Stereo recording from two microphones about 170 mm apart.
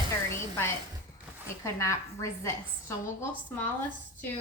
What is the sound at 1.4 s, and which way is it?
Speech, 15° left (ahead or behind).